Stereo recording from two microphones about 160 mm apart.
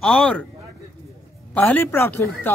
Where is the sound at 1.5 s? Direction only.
10° left (ahead or behind).